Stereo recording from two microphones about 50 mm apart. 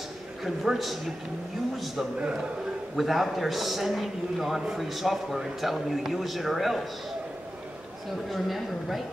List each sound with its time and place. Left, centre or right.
0.4 s a man's voice: centre
2.1 s a man's voice: right
3.0 s a man's voice: centre
8.3 s a man's voice: centre